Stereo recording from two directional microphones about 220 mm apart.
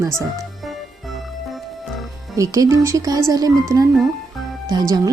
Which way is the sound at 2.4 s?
15° right (ahead or behind).